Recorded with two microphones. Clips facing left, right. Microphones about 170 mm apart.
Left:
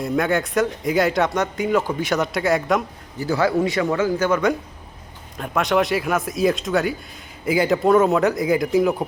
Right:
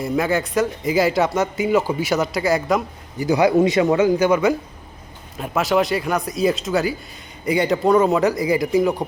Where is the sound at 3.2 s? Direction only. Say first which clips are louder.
Right 4 dB; 15° right (ahead or behind).